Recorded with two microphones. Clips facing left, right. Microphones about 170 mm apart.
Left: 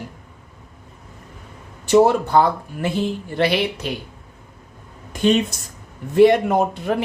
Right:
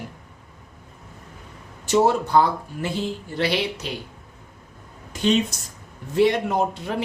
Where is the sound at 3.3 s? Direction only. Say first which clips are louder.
Left 4 dB; 55° left (ahead or behind).